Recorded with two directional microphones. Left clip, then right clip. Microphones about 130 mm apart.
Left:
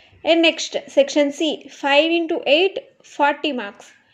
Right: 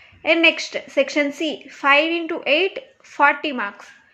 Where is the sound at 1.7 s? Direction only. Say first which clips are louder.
Right 1 dB; 20° left (ahead or behind).